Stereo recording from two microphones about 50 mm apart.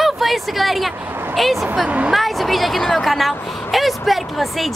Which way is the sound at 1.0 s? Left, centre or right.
Right.